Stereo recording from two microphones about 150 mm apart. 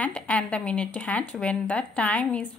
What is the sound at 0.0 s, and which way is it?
Speech, 10° left (ahead or behind).